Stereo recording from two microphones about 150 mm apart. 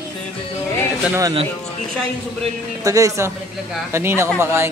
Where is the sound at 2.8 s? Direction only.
20° right (ahead or behind).